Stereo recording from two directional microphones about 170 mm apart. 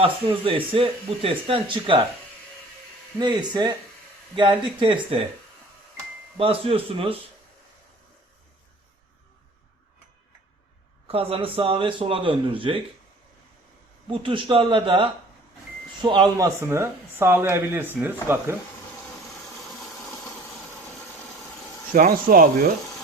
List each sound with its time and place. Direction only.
0.0 s speech: 30° right (ahead or behind)
3.2 s speech: 25° right (ahead or behind)
6.3 s speech: 35° right (ahead or behind)
11.1 s speech: 35° right (ahead or behind)
14.1 s speech: 30° right (ahead or behind); by 18.5 s 10° right (ahead or behind)
21.9 s speech: 55° right (ahead or behind)